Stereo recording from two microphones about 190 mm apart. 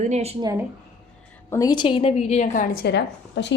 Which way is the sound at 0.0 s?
35° right (ahead or behind).